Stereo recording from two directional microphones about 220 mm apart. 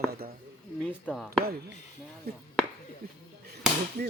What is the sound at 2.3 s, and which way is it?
Speech, 45° right (ahead or behind).